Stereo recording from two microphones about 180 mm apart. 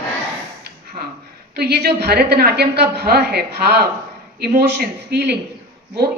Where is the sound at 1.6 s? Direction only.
65° right (ahead or behind).